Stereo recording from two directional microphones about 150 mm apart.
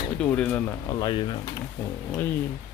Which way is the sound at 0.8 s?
30° left (ahead or behind).